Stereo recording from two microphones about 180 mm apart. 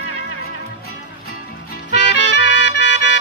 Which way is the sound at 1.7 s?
75° left (ahead or behind).